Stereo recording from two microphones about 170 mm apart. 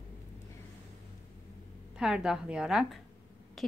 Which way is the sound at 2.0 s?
5° right (ahead or behind).